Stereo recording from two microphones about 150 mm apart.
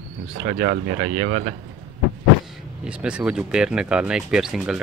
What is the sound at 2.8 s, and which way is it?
Speech, 5° right (ahead or behind).